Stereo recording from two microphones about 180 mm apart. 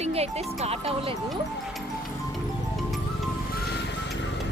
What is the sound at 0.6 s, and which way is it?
Speech, 35° right (ahead or behind).